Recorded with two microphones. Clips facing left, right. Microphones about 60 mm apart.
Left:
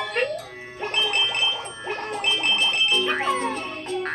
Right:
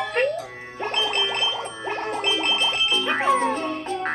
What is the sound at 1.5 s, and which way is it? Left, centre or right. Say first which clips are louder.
Music: right 2 dB; right.